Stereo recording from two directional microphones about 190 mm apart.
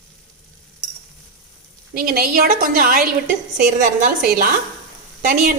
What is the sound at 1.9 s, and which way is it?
A woman's voice, 50° right (ahead or behind).